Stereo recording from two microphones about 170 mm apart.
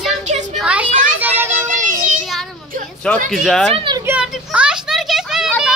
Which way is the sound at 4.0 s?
10° right (ahead or behind).